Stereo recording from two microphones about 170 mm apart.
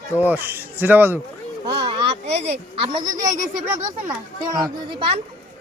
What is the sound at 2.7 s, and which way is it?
Speech, 30° right (ahead or behind).